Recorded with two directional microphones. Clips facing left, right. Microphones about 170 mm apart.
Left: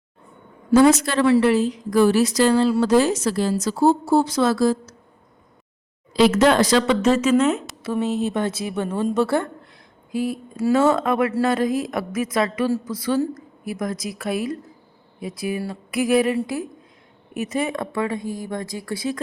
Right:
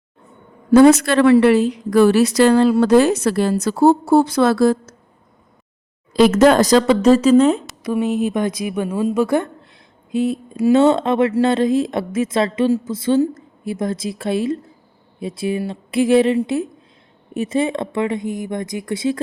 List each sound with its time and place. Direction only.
0.7 s a woman's voice: 65° right (ahead or behind)
6.1 s a woman's voice: 50° right (ahead or behind); by 7.6 s 30° right (ahead or behind)
7.9 s a woman's voice: 15° right (ahead or behind)